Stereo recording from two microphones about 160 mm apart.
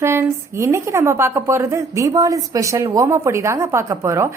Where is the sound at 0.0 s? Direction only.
15° right (ahead or behind).